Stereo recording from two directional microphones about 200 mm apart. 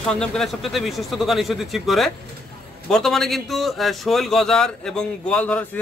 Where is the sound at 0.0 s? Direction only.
5° left (ahead or behind).